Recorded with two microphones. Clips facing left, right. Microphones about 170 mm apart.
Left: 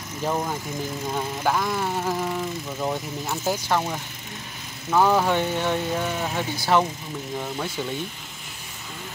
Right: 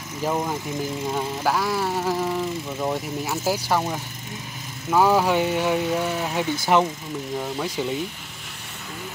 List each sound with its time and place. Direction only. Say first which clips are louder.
0.2 s lawn mower: right 1 dB; 5° right (ahead or behind)
4.9 s speech: right 1 dB; 10° right (ahead or behind)